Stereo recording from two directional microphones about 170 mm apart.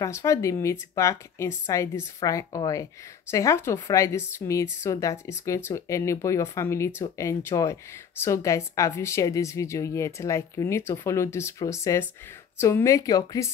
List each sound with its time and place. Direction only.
0.0 s a woman's voice: 20° left (ahead or behind)